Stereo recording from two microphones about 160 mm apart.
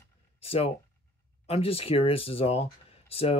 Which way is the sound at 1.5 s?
35° left (ahead or behind).